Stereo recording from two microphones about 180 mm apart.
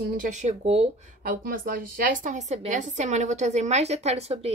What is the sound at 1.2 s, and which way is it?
A woman's voice, 50° right (ahead or behind).